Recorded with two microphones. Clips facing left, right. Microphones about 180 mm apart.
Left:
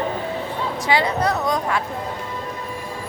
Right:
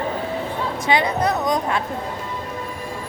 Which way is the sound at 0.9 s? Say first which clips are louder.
Even; 20° right (ahead or behind).